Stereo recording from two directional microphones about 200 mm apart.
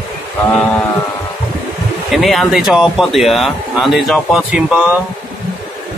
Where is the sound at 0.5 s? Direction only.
5° left (ahead or behind).